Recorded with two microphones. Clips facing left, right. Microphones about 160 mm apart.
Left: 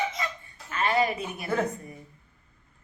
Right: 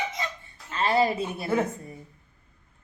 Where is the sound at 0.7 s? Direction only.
30° right (ahead or behind).